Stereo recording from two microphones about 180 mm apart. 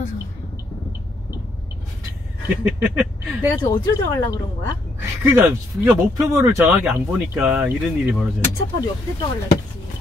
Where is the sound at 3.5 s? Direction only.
25° left (ahead or behind).